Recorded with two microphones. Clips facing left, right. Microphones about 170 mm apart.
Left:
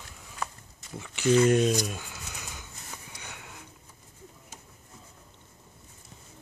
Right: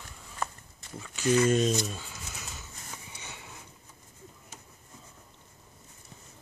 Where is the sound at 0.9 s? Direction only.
15° left (ahead or behind).